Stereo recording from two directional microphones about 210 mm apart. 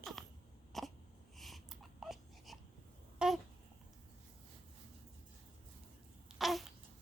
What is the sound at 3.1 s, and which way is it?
Babbling, centre (ahead or behind).